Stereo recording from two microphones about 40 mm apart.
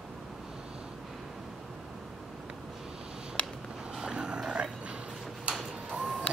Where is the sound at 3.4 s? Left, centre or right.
Left.